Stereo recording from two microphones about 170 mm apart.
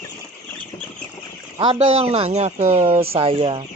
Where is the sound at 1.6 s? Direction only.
30° right (ahead or behind).